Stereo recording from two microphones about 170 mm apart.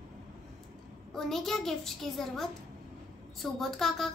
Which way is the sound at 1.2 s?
Centre (ahead or behind).